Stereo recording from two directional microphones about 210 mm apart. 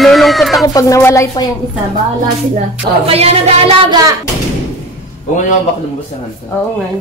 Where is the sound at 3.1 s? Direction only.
30° right (ahead or behind).